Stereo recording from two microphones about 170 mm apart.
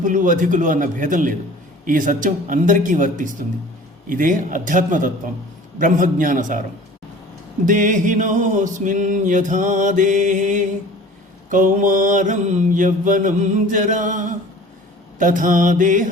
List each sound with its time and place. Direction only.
0.0 s music: 50° right (ahead or behind)
7.6 s music: 50° right (ahead or behind)